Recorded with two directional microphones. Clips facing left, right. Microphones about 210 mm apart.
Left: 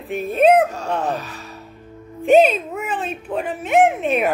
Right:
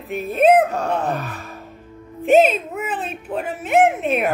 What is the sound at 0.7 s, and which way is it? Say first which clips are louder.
Speech: right 1 dB; 60° right (ahead or behind).